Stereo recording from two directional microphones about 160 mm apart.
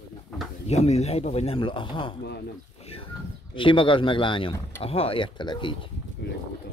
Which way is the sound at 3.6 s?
30° left (ahead or behind).